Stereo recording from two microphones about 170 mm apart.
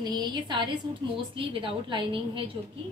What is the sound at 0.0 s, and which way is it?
A woman's voice, 25° right (ahead or behind).